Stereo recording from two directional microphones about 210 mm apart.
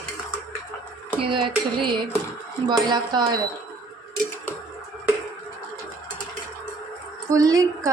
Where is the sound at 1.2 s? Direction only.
25° right (ahead or behind).